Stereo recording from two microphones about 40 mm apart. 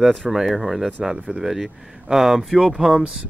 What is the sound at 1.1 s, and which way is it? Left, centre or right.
Speech, right.